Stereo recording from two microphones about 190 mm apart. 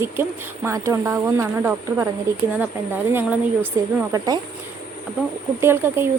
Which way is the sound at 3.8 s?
15° right (ahead or behind).